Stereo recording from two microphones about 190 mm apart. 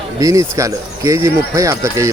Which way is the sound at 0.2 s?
15° right (ahead or behind).